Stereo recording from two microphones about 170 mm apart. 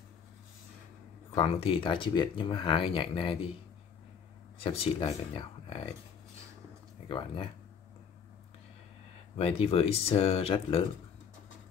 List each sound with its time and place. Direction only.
1.3 s speech: 35° left (ahead or behind)
4.6 s speech: 35° left (ahead or behind)
7.1 s speech: 30° left (ahead or behind)
9.4 s speech: 35° left (ahead or behind)